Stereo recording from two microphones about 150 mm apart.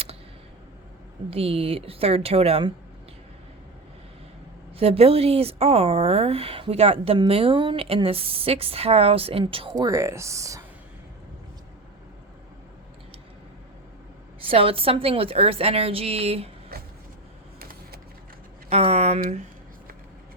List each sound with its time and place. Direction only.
1.3 s a woman's voice: 40° right (ahead or behind)
4.8 s a woman's voice: 40° right (ahead or behind); by 10.6 s 20° right (ahead or behind)
14.4 s a woman's voice: 40° right (ahead or behind)
16.7 s vehicle: 90° right
17.6 s a sound: 80° right
18.7 s speech: 45° right (ahead or behind)